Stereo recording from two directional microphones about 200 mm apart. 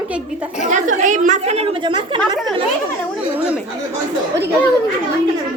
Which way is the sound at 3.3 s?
5° right (ahead or behind).